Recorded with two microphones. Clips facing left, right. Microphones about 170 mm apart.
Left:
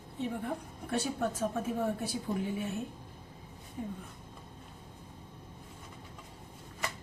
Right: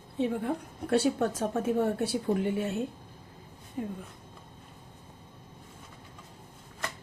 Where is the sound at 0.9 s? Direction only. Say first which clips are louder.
Right 7 dB; 70° right (ahead or behind).